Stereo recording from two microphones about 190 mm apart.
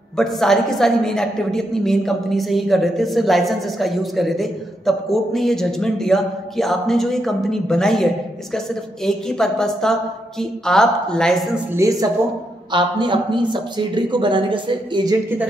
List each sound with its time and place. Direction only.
0.2 s a woman's voice: centre (ahead or behind)
11.7 s speech: 15° right (ahead or behind)